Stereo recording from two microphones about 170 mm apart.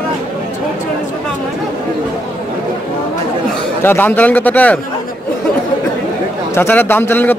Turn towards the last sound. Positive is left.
turn(degrees=10)  # may be behind; listen again after turning